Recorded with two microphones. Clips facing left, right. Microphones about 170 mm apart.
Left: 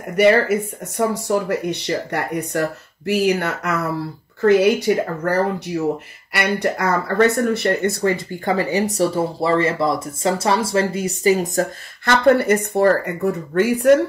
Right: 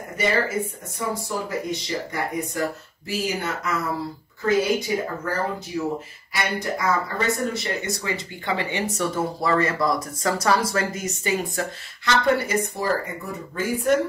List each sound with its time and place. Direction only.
0.1 s speech: 70° left (ahead or behind)